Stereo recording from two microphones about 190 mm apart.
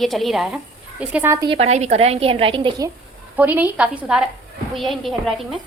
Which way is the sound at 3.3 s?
10° right (ahead or behind).